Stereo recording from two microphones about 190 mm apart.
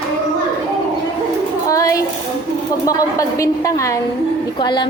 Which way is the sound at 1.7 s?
15° left (ahead or behind).